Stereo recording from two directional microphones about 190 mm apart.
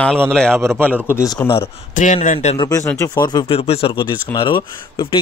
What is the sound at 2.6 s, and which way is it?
A man's voice, 15° left (ahead or behind).